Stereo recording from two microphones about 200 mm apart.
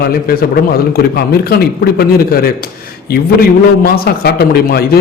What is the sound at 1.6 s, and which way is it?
Speech, 50° left (ahead or behind).